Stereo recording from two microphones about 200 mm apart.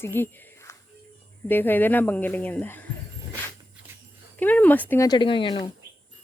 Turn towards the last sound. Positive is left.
turn(degrees=25)  # may be behind; listen again after turning